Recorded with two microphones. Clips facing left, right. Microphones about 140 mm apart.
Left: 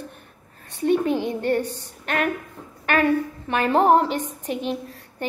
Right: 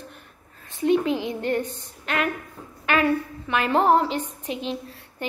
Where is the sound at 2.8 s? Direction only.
45° left (ahead or behind).